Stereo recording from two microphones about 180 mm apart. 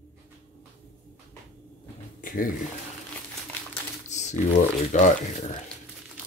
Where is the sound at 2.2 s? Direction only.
50° left (ahead or behind).